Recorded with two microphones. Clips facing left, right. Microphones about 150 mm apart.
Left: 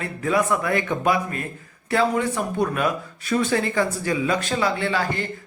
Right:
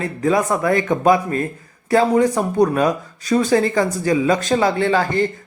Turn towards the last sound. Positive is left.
turn(degrees=-45)  # may be behind; listen again after turning